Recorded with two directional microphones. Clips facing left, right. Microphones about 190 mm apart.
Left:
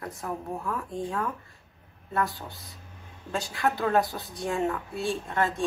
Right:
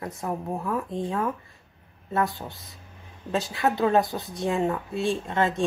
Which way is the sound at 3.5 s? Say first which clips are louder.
Right 3 dB; 20° right (ahead or behind).